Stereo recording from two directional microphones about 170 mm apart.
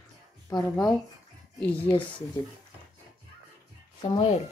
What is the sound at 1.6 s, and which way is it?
Speech, 10° left (ahead or behind).